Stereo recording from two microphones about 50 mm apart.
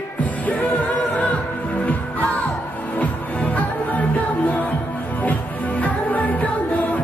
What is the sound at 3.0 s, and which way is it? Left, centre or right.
Music, left.